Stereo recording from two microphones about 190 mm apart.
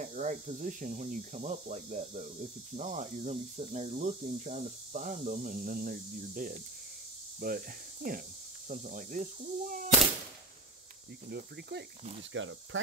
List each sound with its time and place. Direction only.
0.0 s speech: 40° right (ahead or behind)
11.2 s speech: 55° right (ahead or behind)
12.0 s speech: 35° right (ahead or behind)
12.3 s speech: 90° right